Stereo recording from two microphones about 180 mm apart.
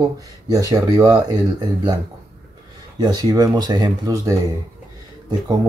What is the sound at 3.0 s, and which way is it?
Speech, 20° right (ahead or behind).